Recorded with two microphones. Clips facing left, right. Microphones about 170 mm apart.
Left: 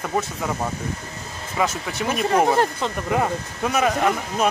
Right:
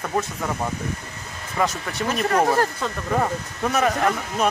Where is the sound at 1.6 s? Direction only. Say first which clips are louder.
Even; centre (ahead or behind).